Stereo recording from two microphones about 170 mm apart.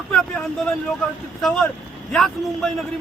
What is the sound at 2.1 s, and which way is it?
Speech, 5° left (ahead or behind).